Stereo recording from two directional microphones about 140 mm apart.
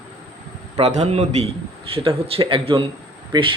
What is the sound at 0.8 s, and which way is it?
A man's voice, 50° right (ahead or behind).